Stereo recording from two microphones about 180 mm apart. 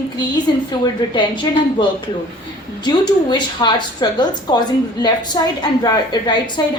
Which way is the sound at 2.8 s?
25° left (ahead or behind).